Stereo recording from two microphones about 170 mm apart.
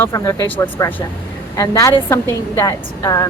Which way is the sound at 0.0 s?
15° left (ahead or behind).